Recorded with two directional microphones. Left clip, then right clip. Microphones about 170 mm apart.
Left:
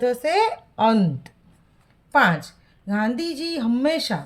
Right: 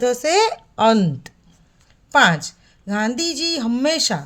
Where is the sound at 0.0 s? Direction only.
30° right (ahead or behind).